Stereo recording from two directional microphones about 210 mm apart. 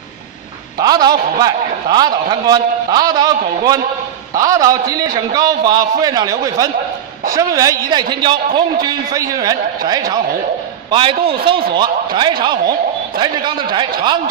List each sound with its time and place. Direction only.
0.8 s a man's voice: 20° right (ahead or behind)